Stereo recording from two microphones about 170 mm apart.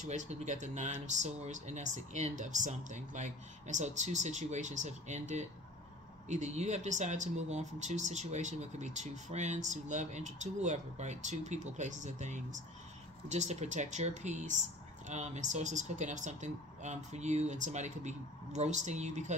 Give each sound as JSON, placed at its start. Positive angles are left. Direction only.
{"t": 0.0, "sound": "speech", "side_deg": -45}
{"t": 6.2, "sound": "speech", "side_deg": -45}